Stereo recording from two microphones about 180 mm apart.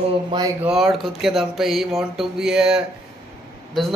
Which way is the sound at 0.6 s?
Centre (ahead or behind).